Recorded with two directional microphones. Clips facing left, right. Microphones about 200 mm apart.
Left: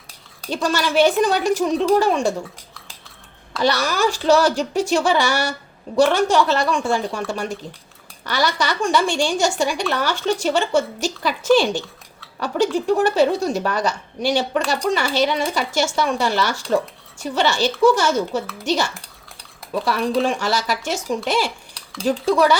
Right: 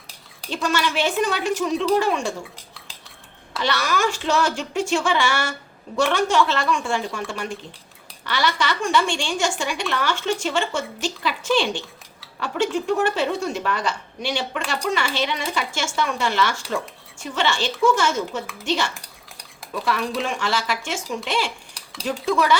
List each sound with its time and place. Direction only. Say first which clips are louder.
0.5 s speech: left 4 dB; 40° left (ahead or behind)
3.6 s speech: left 4 dB; 40° left (ahead or behind)